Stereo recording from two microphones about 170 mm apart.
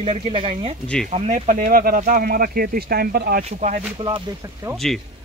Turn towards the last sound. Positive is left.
turn(degrees=0)  # may be behind; listen again after turning